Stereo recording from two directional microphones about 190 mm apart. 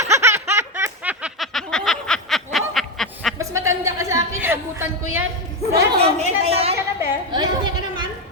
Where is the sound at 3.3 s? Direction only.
15° right (ahead or behind).